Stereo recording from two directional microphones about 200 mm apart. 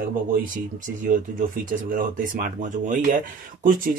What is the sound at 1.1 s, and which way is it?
Speech, 40° right (ahead or behind).